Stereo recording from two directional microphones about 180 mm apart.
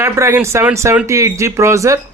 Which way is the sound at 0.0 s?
15° right (ahead or behind).